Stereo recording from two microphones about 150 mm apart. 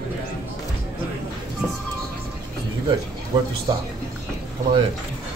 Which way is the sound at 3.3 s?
30° right (ahead or behind).